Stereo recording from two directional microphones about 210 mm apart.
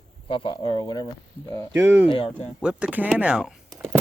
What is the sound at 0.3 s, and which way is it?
Speech, 25° left (ahead or behind).